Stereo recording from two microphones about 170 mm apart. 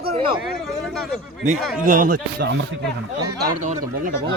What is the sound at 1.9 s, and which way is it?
Speech, 55° right (ahead or behind).